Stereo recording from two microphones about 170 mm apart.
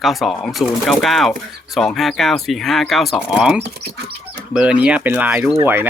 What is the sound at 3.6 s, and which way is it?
Speech, 70° right (ahead or behind).